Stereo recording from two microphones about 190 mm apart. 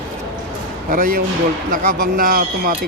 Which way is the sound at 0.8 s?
45° right (ahead or behind).